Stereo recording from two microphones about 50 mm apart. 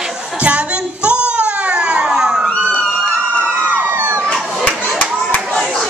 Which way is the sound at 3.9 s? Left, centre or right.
Right.